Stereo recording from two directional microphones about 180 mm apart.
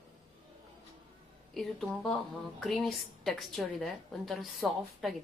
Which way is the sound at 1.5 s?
Centre (ahead or behind).